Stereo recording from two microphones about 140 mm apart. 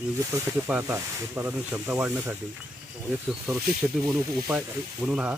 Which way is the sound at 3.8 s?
15° right (ahead or behind).